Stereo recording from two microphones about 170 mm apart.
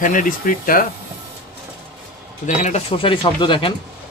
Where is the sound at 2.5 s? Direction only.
45° left (ahead or behind).